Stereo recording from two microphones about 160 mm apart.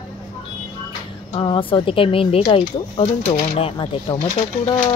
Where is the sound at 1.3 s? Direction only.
30° left (ahead or behind).